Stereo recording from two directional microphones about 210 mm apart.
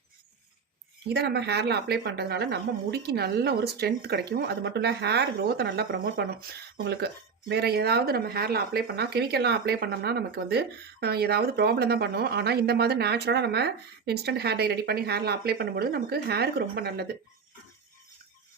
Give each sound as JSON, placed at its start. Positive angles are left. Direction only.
{"t": 1.0, "sound": "speech", "side_deg": -50}